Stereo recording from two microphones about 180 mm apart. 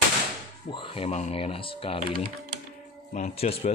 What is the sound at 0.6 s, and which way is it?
Speech, 30° left (ahead or behind).